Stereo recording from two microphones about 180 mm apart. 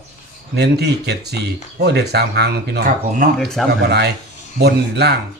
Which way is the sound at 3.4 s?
Centre (ahead or behind).